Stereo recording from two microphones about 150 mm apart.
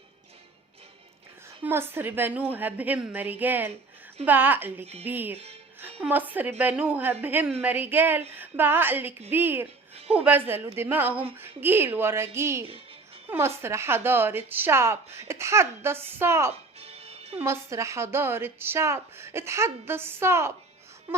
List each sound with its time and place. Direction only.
1.6 s a woman's voice: 15° right (ahead or behind)
9.9 s a sound: 40° right (ahead or behind)
10.2 s a woman's voice: 10° right (ahead or behind)
16.8 s music: 40° right (ahead or behind)
17.4 s a woman's voice: 20° right (ahead or behind)
21.1 s a sound: 15° right (ahead or behind)